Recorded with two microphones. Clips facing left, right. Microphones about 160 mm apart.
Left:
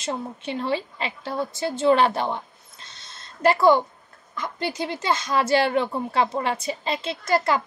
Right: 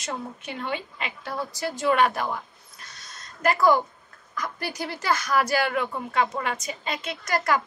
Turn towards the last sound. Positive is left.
turn(degrees=25)  # may be behind; listen again after turning